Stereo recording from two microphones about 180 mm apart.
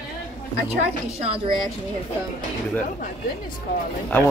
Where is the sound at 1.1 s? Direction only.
35° right (ahead or behind).